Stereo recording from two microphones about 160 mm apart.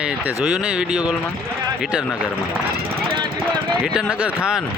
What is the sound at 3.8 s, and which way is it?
Speech, 5° right (ahead or behind).